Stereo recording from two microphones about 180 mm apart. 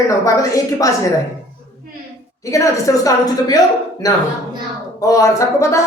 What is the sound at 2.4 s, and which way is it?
A woman's voice, 15° left (ahead or behind).